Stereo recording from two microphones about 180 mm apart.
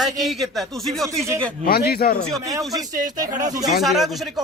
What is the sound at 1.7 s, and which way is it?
Speech, 60° left (ahead or behind).